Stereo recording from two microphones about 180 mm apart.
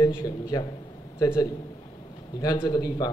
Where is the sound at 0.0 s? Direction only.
20° left (ahead or behind).